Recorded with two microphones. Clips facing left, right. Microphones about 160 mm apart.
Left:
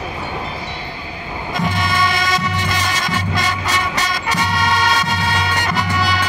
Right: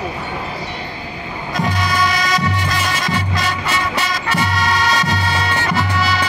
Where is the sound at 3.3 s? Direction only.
5° right (ahead or behind).